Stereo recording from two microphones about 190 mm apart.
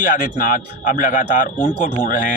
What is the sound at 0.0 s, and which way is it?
A man's voice, 40° left (ahead or behind).